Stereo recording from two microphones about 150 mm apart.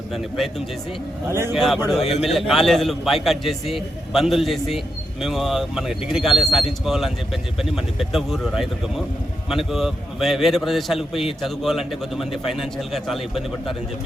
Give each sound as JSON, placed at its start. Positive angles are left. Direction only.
{"t": 0.1, "sound": "a man's voice", "side_deg": 0}
{"t": 1.3, "sound": "speech", "side_deg": -15}
{"t": 1.5, "sound": "a man's voice", "side_deg": 0}